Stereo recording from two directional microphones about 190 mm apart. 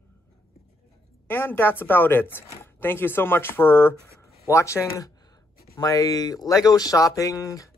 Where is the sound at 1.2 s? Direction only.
10° left (ahead or behind).